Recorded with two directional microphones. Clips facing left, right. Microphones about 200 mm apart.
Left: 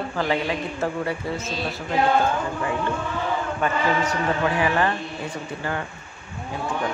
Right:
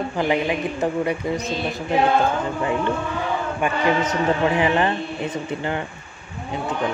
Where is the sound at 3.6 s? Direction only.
20° right (ahead or behind).